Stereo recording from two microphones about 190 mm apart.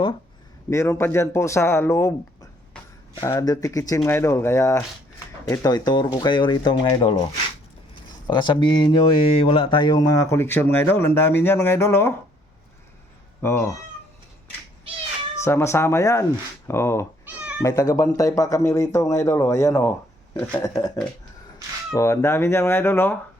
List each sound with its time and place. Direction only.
0.7 s speech: 15° left (ahead or behind)
8.3 s speech: 25° left (ahead or behind)
13.4 s speech: 15° left (ahead or behind)
15.4 s speech: 15° left (ahead or behind)
17.2 s cat: 5° right (ahead or behind)
17.6 s speech: 20° left (ahead or behind)